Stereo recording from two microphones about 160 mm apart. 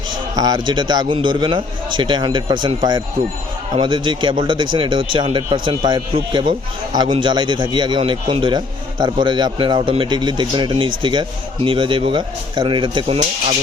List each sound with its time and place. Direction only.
0.3 s a man's voice: 25° right (ahead or behind)